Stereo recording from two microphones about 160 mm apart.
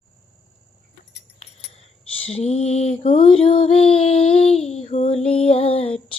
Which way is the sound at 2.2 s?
40° left (ahead or behind).